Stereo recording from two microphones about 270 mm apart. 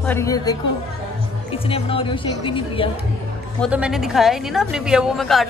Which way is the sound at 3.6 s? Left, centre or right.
Centre.